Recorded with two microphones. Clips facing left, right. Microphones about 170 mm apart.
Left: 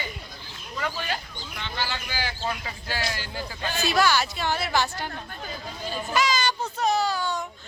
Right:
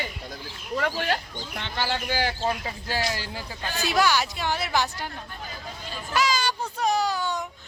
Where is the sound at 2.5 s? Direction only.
35° right (ahead or behind).